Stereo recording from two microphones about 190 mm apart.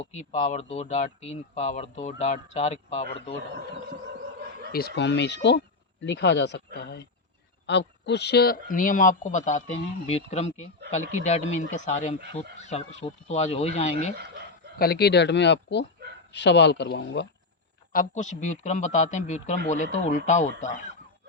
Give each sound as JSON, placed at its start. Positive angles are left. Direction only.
{"t": 0.0, "sound": "speech", "side_deg": 40}
{"t": 4.7, "sound": "speech", "side_deg": 60}
{"t": 14.8, "sound": "speech", "side_deg": 55}
{"t": 17.9, "sound": "speech", "side_deg": 40}